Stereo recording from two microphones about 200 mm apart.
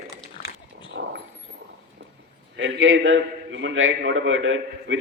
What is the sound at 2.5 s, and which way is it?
A man's voice, 80° right.